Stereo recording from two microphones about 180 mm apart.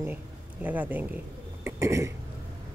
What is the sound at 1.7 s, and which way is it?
Cough, 15° right (ahead or behind).